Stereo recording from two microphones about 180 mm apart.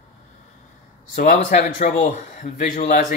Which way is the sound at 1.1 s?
45° left (ahead or behind).